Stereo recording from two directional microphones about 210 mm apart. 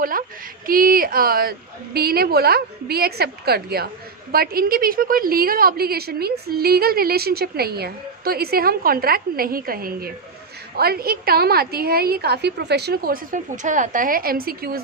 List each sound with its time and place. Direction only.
0.0 s a woman's voice: 40° right (ahead or behind)